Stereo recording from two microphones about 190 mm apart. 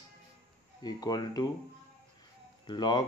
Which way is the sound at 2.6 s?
20° left (ahead or behind).